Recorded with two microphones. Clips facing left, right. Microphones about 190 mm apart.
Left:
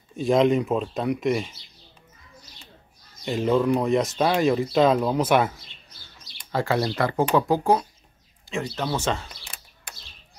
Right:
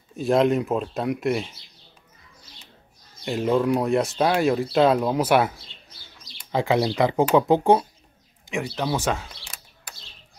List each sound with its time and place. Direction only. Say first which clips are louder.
0.1 s speech: even; 5° right (ahead or behind)
3.3 s speech: even; 5° right (ahead or behind)
6.5 s speech: right 2 dB; 15° right (ahead or behind)
8.5 s speech: right 2 dB; 10° right (ahead or behind)